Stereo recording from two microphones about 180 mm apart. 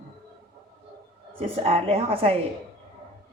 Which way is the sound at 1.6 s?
35° right (ahead or behind).